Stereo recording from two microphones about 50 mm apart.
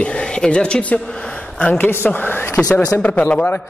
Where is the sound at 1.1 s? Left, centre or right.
Left.